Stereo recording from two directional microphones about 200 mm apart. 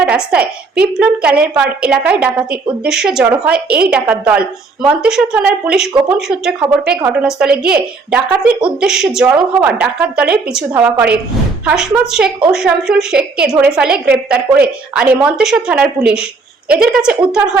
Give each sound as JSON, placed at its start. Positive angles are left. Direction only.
{"t": 0.0, "sound": "a woman's voice", "side_deg": -5}